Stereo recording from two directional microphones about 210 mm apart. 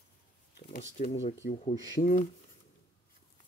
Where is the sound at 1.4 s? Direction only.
35° left (ahead or behind).